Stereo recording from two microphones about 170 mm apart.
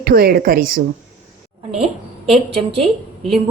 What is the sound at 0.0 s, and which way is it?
Speech, 65° right (ahead or behind).